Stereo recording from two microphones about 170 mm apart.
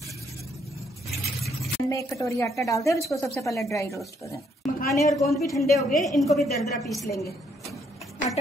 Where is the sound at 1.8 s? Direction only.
20° left (ahead or behind).